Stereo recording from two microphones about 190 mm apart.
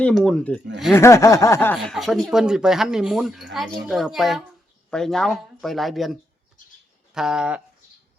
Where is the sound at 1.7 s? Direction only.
Centre (ahead or behind).